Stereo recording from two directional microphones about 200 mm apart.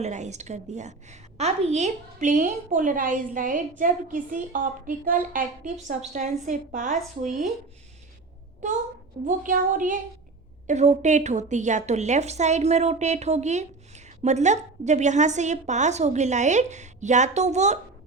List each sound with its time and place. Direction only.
0.0 s a woman's voice: 35° right (ahead or behind)
9.2 s a woman's voice: 40° right (ahead or behind)